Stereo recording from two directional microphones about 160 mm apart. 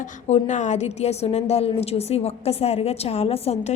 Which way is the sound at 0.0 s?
50° left (ahead or behind).